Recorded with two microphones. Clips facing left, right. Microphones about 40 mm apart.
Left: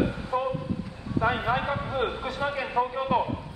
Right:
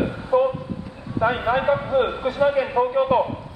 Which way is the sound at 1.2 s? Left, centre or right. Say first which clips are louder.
Right 5 dB; centre.